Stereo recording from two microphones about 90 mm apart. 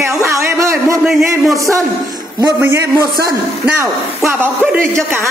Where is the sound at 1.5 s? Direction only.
35° right (ahead or behind).